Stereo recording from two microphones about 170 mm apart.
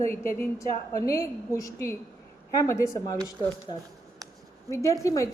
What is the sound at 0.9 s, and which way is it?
A woman's voice, 20° left (ahead or behind).